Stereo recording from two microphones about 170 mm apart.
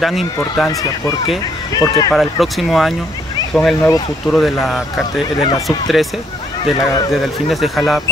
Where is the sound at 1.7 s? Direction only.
20° left (ahead or behind).